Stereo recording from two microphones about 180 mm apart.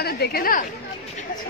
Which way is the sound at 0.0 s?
60° left (ahead or behind).